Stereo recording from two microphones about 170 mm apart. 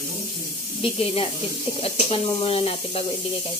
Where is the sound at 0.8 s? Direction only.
35° left (ahead or behind).